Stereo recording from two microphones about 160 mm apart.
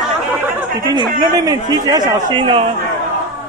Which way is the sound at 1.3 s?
25° right (ahead or behind).